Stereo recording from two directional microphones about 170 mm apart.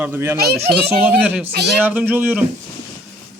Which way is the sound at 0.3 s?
65° right (ahead or behind).